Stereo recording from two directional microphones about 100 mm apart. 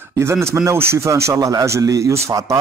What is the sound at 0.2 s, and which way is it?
Speech, 25° right (ahead or behind).